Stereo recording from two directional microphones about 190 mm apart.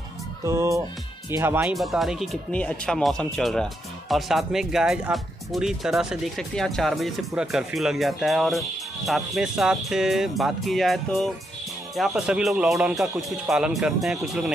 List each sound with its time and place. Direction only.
0.5 s speech: 15° right (ahead or behind)